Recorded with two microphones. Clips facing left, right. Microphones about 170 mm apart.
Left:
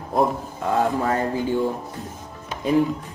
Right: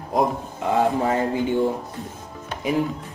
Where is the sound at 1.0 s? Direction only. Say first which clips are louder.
Right 1 dB; 20° right (ahead or behind).